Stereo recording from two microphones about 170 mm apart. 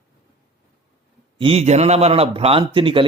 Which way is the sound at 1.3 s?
35° right (ahead or behind).